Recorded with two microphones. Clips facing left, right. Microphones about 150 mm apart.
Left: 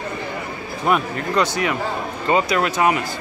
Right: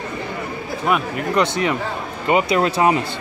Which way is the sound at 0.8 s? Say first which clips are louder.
Left 1 dB; centre (ahead or behind).